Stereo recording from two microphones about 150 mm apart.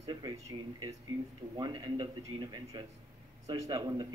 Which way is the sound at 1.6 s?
30° right (ahead or behind).